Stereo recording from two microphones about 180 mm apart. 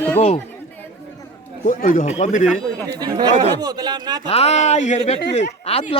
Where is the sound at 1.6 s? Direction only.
45° left (ahead or behind).